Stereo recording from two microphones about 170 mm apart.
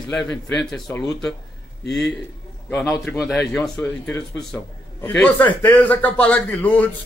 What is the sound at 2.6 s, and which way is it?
A man's voice, centre (ahead or behind).